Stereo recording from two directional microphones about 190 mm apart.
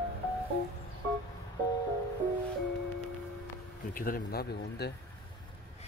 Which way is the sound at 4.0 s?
50° left (ahead or behind).